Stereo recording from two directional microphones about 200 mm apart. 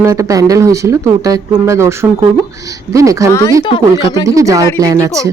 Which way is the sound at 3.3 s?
15° left (ahead or behind).